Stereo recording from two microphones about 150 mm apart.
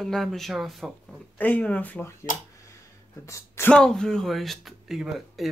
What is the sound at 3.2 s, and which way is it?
Speech, 20° left (ahead or behind).